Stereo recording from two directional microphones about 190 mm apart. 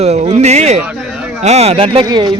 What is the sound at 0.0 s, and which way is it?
Speech, 35° right (ahead or behind).